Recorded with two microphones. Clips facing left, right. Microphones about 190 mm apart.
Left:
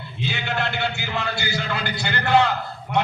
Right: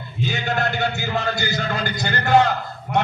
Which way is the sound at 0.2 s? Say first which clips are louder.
Right 3 dB; 40° right (ahead or behind).